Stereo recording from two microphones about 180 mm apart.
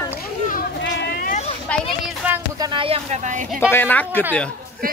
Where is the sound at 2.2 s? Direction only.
15° right (ahead or behind).